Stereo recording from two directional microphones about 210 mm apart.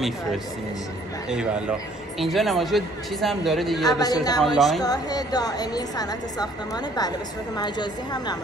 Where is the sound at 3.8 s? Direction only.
15° left (ahead or behind).